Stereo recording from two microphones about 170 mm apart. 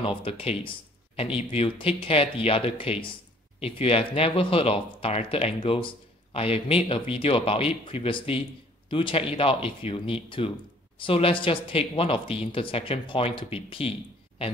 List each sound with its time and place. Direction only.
0.0 s speech: 35° left (ahead or behind)